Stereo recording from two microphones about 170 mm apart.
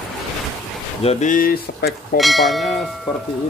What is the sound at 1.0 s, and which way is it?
Speech, 50° left (ahead or behind).